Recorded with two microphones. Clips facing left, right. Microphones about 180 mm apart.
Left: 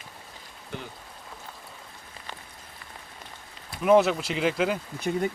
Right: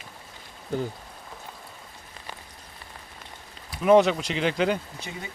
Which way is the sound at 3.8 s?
Centre (ahead or behind).